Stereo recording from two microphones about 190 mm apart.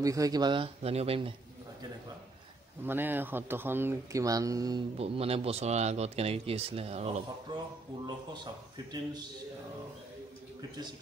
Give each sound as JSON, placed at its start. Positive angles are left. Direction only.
{"t": 0.0, "sound": "speech", "side_deg": -20}
{"t": 2.8, "sound": "speech", "side_deg": -10}
{"t": 4.9, "sound": "speech", "side_deg": -30}
{"t": 8.3, "sound": "speech", "side_deg": -20}